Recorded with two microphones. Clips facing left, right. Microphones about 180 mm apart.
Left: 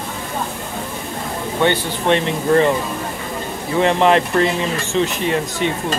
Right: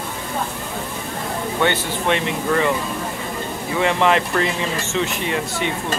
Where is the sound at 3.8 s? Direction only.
30° left (ahead or behind).